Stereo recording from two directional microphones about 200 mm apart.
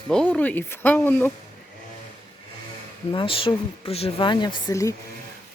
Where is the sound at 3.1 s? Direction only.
25° left (ahead or behind).